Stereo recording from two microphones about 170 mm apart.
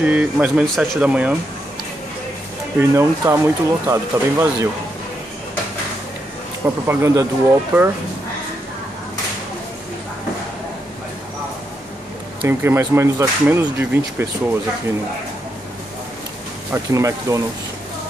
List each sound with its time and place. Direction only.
0.0 s speech: 5° right (ahead or behind)
2.8 s speech: 15° right (ahead or behind)
6.6 s speech: 15° right (ahead or behind)
12.4 s speech: 15° right (ahead or behind)
16.7 s speech: 15° right (ahead or behind)